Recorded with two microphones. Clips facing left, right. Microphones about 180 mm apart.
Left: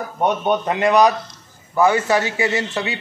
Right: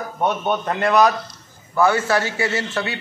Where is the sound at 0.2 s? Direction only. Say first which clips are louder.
Left 3 dB; 15° left (ahead or behind).